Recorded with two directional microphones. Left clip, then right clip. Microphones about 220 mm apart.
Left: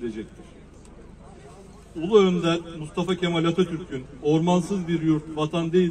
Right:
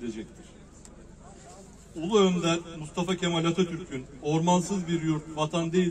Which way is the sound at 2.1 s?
40° right (ahead or behind).